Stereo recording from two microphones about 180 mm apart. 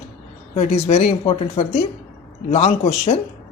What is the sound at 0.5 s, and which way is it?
Speech, 40° left (ahead or behind).